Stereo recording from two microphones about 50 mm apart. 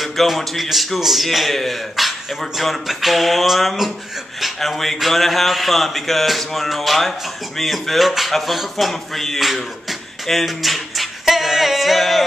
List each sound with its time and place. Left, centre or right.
0.0 s speech: centre